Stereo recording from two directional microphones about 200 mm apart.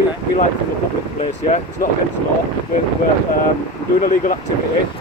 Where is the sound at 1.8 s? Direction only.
45° left (ahead or behind).